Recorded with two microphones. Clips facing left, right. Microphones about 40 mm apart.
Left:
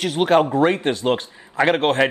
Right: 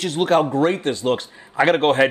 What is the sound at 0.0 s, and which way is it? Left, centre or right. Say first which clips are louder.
Speech: left 1 dB; centre.